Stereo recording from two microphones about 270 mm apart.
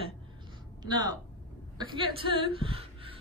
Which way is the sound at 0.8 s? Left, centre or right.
Centre.